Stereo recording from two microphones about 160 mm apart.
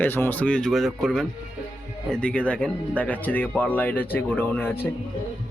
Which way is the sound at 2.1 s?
5° left (ahead or behind).